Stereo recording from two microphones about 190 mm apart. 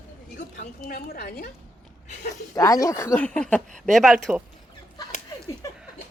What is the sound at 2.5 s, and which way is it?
A woman's voice, 15° left (ahead or behind).